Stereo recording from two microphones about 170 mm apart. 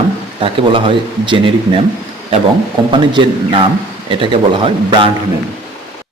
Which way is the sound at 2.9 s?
30° right (ahead or behind).